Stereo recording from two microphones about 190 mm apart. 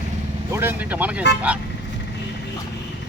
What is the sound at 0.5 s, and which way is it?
Speech, 10° right (ahead or behind).